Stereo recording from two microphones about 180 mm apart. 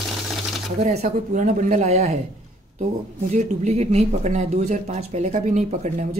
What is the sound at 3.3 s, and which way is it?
Speech, 40° right (ahead or behind).